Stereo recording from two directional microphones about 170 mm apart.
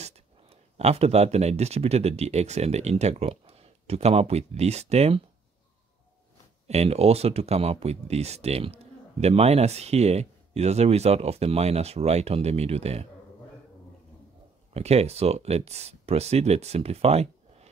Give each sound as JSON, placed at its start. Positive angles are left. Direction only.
{"t": 0.0, "sound": "speech", "side_deg": -40}
{"t": 6.7, "sound": "speech", "side_deg": -40}
{"t": 14.7, "sound": "speech", "side_deg": -40}